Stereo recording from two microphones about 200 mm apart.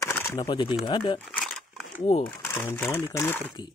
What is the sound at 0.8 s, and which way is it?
Speech, 25° left (ahead or behind).